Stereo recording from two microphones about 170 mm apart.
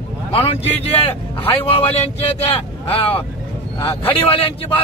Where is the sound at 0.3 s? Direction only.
35° left (ahead or behind).